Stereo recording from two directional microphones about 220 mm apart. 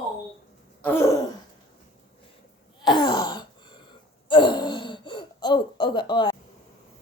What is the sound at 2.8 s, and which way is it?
Throat clearing, 20° left (ahead or behind).